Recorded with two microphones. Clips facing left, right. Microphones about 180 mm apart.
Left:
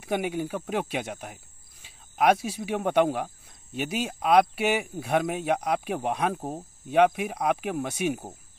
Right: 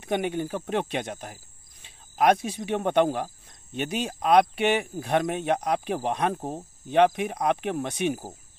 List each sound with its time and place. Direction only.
0.0 s speech: 5° left (ahead or behind)